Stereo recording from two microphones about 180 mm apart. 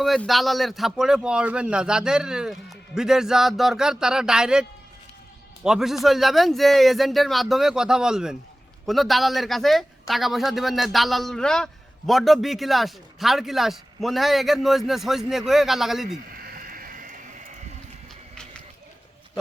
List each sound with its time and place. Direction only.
0.0 s speech: centre (ahead or behind)
5.6 s speech: centre (ahead or behind)
16.3 s a sound: 55° right (ahead or behind)